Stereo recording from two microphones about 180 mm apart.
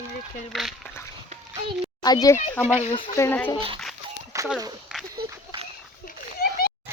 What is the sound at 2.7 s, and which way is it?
Speech, 30° left (ahead or behind).